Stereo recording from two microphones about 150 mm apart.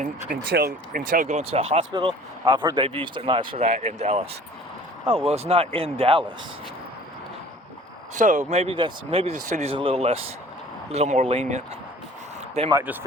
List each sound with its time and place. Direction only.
0.3 s speech: 90° right; by 1.8 s 45° right (ahead or behind)
1.9 s speech: 30° right (ahead or behind)
8.1 s speech: 60° right (ahead or behind)
8.4 s speech: 45° right (ahead or behind)
9.7 s speech: 40° right (ahead or behind)
12.8 s speech: 10° right (ahead or behind)